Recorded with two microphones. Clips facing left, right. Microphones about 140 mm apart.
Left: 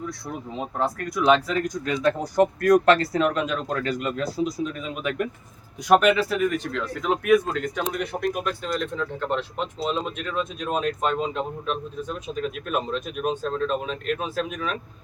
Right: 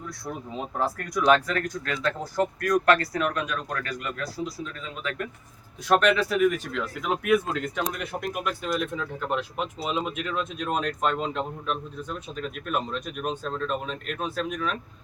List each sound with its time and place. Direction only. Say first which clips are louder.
0.8 s speech: left 2 dB; centre (ahead or behind); by 5.3 s 20° left (ahead or behind)
6.0 s speech: left 1 dB; 5° left (ahead or behind)